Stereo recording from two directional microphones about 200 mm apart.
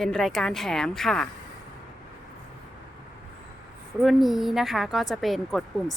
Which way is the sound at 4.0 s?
Centre (ahead or behind).